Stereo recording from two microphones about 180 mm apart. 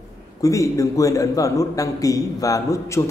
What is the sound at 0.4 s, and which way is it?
A man's voice, 20° left (ahead or behind).